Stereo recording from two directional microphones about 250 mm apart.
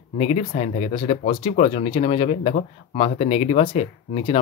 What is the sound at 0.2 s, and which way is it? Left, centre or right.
Speech, left.